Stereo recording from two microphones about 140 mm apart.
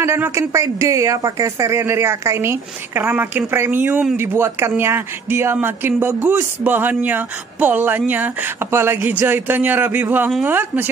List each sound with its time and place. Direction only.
0.0 s a woman's voice: 20° right (ahead or behind)